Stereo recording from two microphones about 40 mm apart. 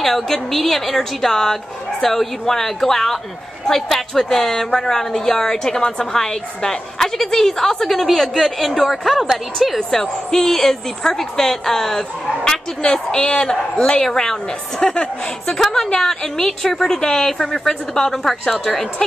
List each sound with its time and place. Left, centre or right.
0.0 s a woman's voice: centre
9.8 s a woman's voice: centre
14.8 s a woman's voice: left
15.5 s a woman's voice: centre